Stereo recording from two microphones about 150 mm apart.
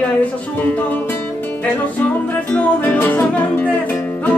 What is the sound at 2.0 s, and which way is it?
Music, 10° left (ahead or behind).